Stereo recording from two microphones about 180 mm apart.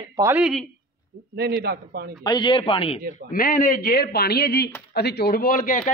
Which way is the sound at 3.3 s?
50° left (ahead or behind).